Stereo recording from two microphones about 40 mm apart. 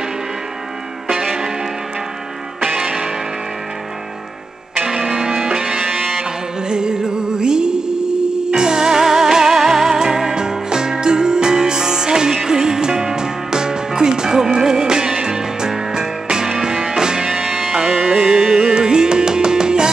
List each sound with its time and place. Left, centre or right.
1.1 s music: centre
2.6 s music: centre
4.8 s music: centre